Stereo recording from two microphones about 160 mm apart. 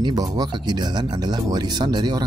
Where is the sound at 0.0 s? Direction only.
25° right (ahead or behind).